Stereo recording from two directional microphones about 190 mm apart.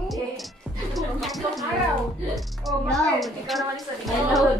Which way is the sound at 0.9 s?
Centre (ahead or behind).